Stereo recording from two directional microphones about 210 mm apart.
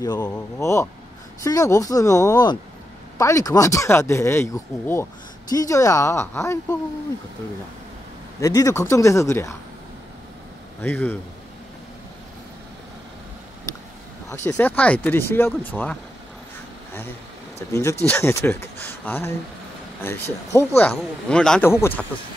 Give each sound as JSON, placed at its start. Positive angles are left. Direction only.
{"t": 0.0, "sound": "speech", "side_deg": 20}
{"t": 8.4, "sound": "speech", "side_deg": 15}
{"t": 10.8, "sound": "speech", "side_deg": 10}
{"t": 14.3, "sound": "speech", "side_deg": 10}
{"t": 17.6, "sound": "speech", "side_deg": 15}